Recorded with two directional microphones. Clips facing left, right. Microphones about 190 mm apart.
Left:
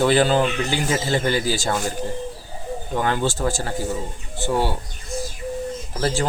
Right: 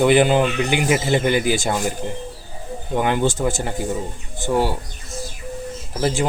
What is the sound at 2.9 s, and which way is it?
Speech, 15° right (ahead or behind).